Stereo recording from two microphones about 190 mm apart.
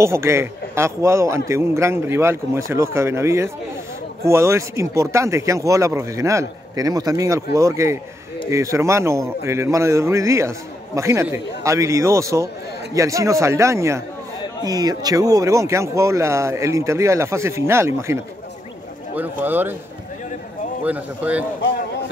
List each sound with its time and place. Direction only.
0.0 s speech: 15° right (ahead or behind)
20.8 s speech: 10° right (ahead or behind)